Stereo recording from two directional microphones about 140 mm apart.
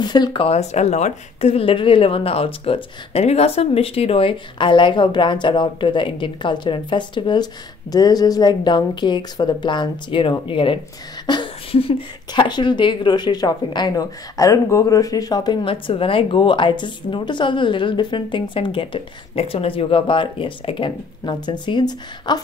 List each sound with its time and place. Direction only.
0.0 s speech: 30° left (ahead or behind)
0.5 s speech: 55° left (ahead or behind); by 22.4 s 30° left (ahead or behind)